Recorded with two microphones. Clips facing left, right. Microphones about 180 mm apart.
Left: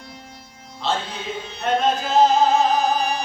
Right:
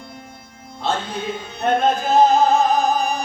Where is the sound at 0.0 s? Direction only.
55° right (ahead or behind).